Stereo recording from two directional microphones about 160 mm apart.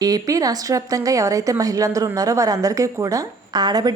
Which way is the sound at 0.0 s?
20° right (ahead or behind).